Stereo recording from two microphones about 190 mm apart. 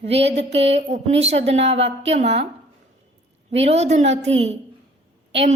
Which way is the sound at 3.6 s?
35° right (ahead or behind).